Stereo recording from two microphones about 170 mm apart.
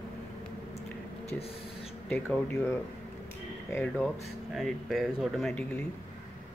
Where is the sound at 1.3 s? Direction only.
35° left (ahead or behind).